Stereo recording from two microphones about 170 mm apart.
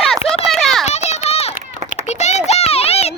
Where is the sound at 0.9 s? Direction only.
40° left (ahead or behind).